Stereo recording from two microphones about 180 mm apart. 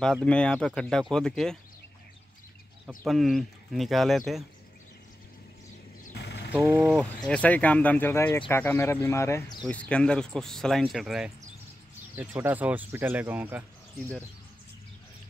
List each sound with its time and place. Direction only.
0.0 s speech: 5° left (ahead or behind)
3.1 s speech: centre (ahead or behind)
6.1 s a sound: 65° left (ahead or behind)
6.6 s speech: 15° right (ahead or behind)
6.9 s speech: 5° left (ahead or behind)